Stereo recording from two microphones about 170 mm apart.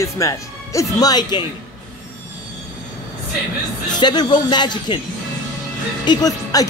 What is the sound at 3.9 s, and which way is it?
Speech, 25° left (ahead or behind).